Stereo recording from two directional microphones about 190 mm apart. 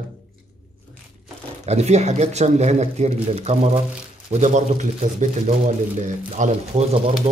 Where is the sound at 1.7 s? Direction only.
35° right (ahead or behind).